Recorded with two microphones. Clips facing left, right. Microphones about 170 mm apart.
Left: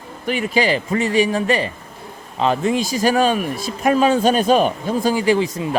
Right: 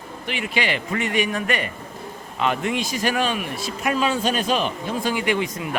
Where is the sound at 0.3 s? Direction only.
40° left (ahead or behind).